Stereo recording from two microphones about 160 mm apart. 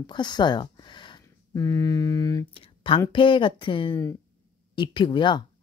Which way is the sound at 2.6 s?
35° left (ahead or behind).